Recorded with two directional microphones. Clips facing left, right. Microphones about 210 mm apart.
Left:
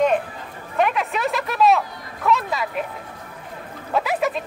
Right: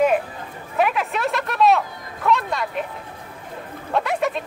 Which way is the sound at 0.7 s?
Centre (ahead or behind).